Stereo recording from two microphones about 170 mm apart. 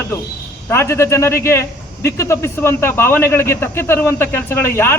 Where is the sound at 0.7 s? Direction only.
15° left (ahead or behind).